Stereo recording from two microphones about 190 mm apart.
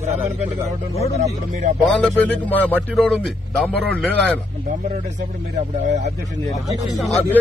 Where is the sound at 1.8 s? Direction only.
5° left (ahead or behind).